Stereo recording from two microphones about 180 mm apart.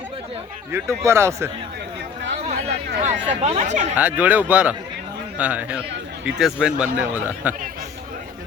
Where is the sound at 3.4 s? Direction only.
40° right (ahead or behind).